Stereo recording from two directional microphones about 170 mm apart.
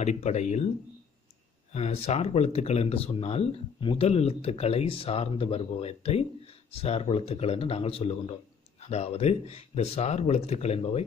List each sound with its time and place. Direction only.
0.0 s speech: 40° left (ahead or behind)
1.7 s speech: 40° left (ahead or behind)